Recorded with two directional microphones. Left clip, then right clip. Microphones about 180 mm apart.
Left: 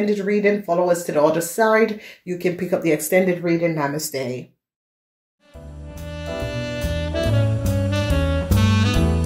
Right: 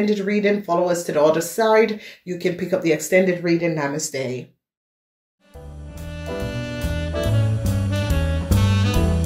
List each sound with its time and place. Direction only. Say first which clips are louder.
0.0 s speech: left 1 dB; 35° left (ahead or behind)
5.9 s music: left 1 dB; centre (ahead or behind)